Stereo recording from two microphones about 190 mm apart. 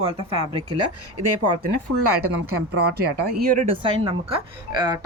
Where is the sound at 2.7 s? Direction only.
60° right (ahead or behind).